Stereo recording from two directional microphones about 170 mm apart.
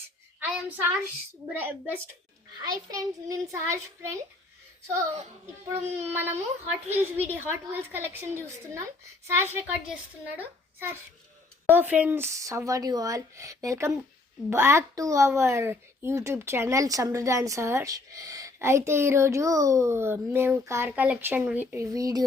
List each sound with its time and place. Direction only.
0.3 s a child's voice: 10° right (ahead or behind)
5.6 s speech: 15° right (ahead or behind)